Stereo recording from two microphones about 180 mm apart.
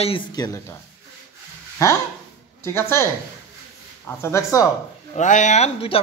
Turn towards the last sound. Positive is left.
turn(degrees=35)  # may be behind; listen again after turning